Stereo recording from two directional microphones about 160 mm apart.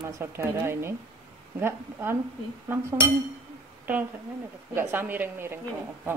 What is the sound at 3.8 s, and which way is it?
A woman's voice, 10° right (ahead or behind).